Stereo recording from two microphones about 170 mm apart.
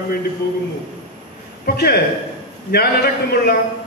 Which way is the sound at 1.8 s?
70° left (ahead or behind).